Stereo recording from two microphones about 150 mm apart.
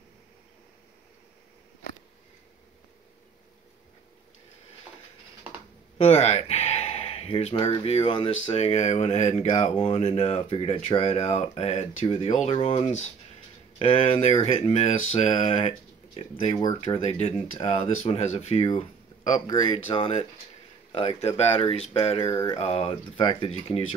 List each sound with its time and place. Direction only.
5.9 s speech: 45° left (ahead or behind)
16.5 s speech: 20° left (ahead or behind)
16.8 s speech: 40° left (ahead or behind)
18.8 s a sound: 55° left (ahead or behind)
19.4 s speech: 30° left (ahead or behind)
22.3 s mantra: 20° left (ahead or behind)
22.6 s speech: 40° left (ahead or behind)